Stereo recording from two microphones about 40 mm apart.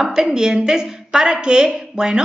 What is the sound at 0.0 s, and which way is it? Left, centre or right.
A woman's voice, centre.